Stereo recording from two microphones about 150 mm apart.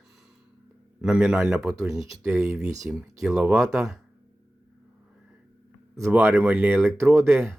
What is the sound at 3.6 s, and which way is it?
Speech, 20° right (ahead or behind).